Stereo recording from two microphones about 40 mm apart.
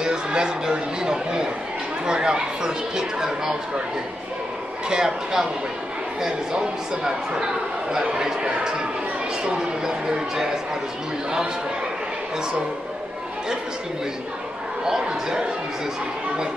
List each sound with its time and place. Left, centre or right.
0.0 s speech: centre
4.8 s speech: centre
14.9 s speech: centre